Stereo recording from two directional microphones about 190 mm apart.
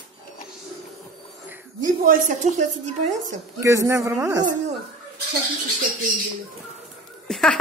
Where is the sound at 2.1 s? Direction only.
40° right (ahead or behind).